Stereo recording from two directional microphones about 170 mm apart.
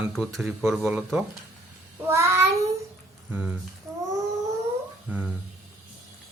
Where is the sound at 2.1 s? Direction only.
15° right (ahead or behind).